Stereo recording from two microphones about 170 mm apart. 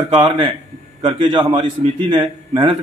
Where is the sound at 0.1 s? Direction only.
30° right (ahead or behind).